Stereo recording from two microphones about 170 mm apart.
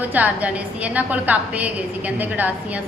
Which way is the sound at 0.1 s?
10° right (ahead or behind).